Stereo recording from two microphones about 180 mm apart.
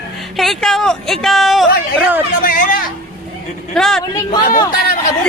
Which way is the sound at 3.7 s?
5° left (ahead or behind).